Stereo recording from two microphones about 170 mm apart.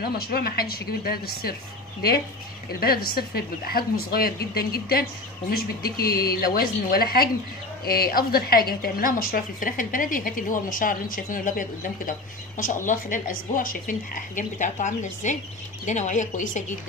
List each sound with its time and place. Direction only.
0.0 s a woman's voice: 65° left (ahead or behind)
2.8 s a woman's voice: 65° left (ahead or behind); by 16.6 s 45° left (ahead or behind)